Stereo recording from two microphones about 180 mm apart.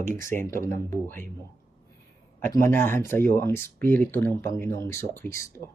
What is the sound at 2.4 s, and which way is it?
Speech, 15° left (ahead or behind).